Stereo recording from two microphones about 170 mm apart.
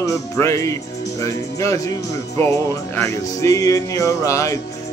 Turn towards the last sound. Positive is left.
turn(degrees=20)  # may be behind; listen again after turning